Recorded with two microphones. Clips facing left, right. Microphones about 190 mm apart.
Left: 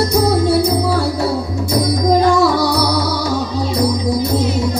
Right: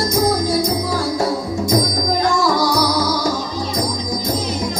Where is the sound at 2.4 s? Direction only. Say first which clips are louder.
Left 3 dB; 65° left (ahead or behind).